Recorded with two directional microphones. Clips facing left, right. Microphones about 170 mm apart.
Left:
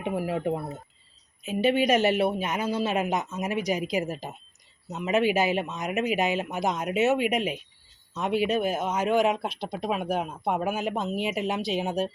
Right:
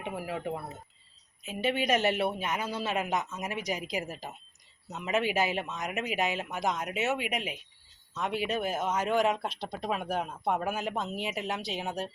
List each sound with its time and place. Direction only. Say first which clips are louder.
0.0 s speech: left 7 dB; 15° left (ahead or behind)
0.3 s speech: left 7 dB; 25° left (ahead or behind)
1.6 s speech: left 7 dB; 20° right (ahead or behind)
1.9 s speech: left 5 dB; 10° left (ahead or behind)